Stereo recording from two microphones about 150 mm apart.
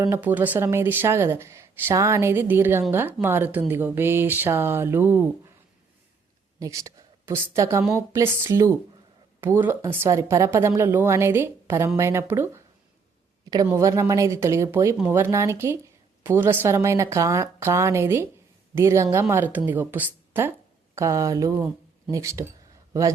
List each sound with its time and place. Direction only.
0.0 s speech: 15° right (ahead or behind)
6.6 s a woman's voice: 20° right (ahead or behind)
13.7 s a woman's voice: 20° right (ahead or behind)